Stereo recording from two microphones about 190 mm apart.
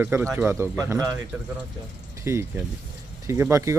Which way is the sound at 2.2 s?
15° right (ahead or behind).